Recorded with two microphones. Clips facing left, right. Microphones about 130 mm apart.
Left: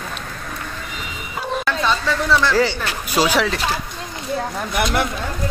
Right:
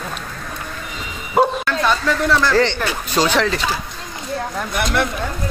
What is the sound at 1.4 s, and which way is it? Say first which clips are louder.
Bow-wow: right 14 dB; 60° right (ahead or behind).